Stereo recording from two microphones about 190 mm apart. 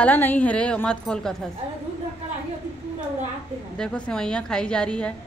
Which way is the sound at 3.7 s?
5° left (ahead or behind).